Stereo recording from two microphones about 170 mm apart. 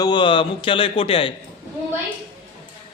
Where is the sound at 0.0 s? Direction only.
25° left (ahead or behind).